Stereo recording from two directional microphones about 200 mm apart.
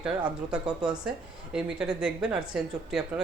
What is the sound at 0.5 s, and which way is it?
Speech, 5° right (ahead or behind).